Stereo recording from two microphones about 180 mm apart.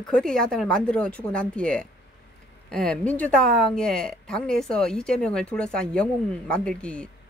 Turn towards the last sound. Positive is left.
turn(degrees=5)  # may be behind; listen again after turning